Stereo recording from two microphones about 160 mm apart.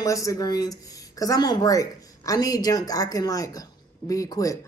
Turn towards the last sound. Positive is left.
turn(degrees=20)  # may be behind; listen again after turning